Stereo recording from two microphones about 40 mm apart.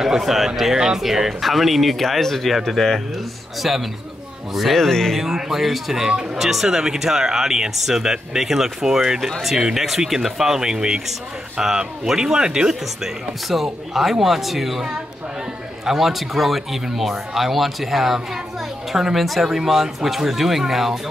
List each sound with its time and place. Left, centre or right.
0.0 s speech: centre
3.6 s speech: centre
4.7 s speech: centre
5.1 s speech: centre
13.5 s speech: centre